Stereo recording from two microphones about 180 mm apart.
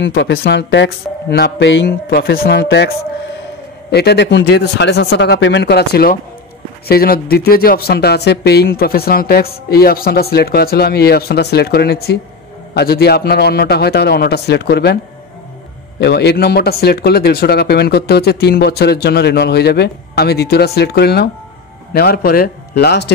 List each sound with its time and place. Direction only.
0.0 s speech: 70° left (ahead or behind)
3.9 s speech: 65° left (ahead or behind)
16.0 s speech: 70° left (ahead or behind)